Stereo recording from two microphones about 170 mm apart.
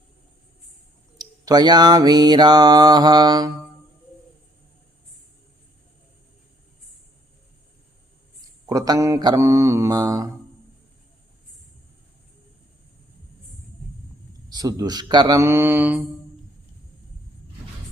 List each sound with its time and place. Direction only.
1.2 s mantra: 25° right (ahead or behind)
8.7 s mantra: 20° right (ahead or behind)
14.5 s mantra: 20° right (ahead or behind)